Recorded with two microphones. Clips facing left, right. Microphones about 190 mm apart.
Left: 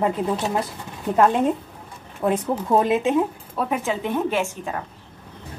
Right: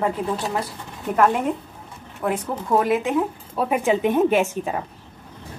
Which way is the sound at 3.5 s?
15° right (ahead or behind).